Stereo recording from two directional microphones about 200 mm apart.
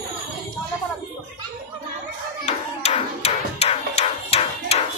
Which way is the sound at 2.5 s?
30° left (ahead or behind).